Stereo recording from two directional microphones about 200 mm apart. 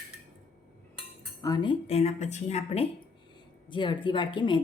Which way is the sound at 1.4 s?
20° left (ahead or behind).